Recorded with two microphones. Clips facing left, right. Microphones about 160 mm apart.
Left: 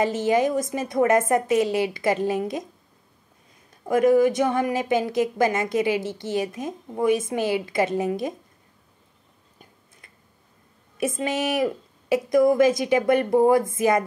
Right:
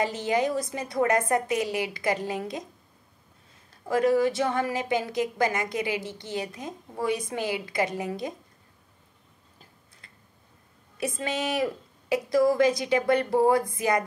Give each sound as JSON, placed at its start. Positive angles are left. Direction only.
{"t": 0.0, "sound": "a woman's voice", "side_deg": 20}
{"t": 3.7, "sound": "a woman's voice", "side_deg": 20}
{"t": 11.0, "sound": "a woman's voice", "side_deg": 20}